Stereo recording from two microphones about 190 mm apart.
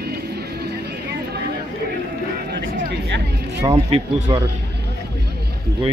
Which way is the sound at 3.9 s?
30° right (ahead or behind).